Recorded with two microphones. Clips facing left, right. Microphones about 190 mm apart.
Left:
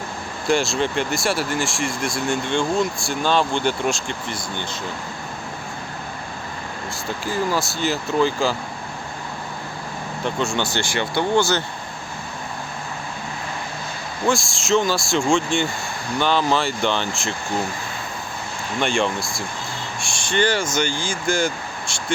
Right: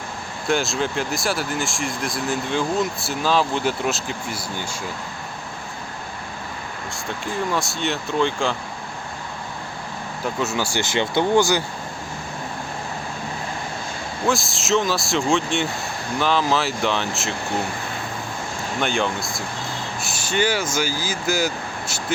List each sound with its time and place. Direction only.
0.4 s speech: centre (ahead or behind)
7.3 s speech: centre (ahead or behind)
10.2 s speech: 5° right (ahead or behind)
10.8 s speech: 20° right (ahead or behind)
14.3 s speech: centre (ahead or behind)
18.8 s speech: centre (ahead or behind)